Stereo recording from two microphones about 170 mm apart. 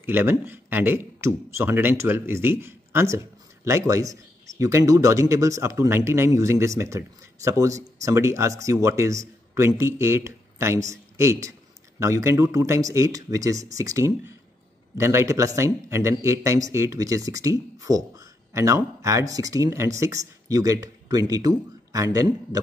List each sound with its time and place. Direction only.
0.0 s a man's voice: 15° right (ahead or behind)